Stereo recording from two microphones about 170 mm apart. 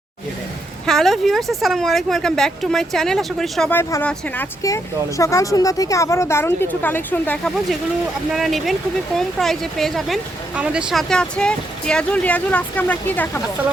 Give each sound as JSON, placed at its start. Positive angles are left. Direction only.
{"t": 0.9, "sound": "speech", "side_deg": 0}
{"t": 8.3, "sound": "speech", "side_deg": 0}